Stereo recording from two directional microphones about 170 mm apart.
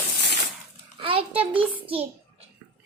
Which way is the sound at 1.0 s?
30° right (ahead or behind).